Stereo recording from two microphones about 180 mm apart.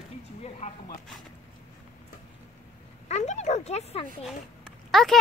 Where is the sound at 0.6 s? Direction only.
40° left (ahead or behind).